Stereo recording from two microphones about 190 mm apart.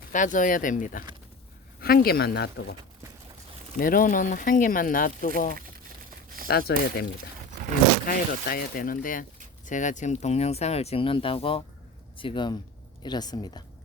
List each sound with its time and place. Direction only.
0.1 s speech: 40° left (ahead or behind); by 2.7 s 60° left (ahead or behind)
3.8 s speech: 45° left (ahead or behind); by 13.6 s 20° left (ahead or behind)